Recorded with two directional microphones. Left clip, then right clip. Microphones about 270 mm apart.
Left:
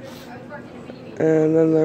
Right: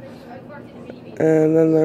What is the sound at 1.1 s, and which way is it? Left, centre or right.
Speech, centre.